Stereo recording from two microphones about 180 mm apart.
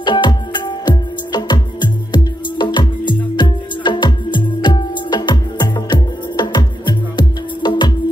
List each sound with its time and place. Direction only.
0.0 s music: 25° left (ahead or behind)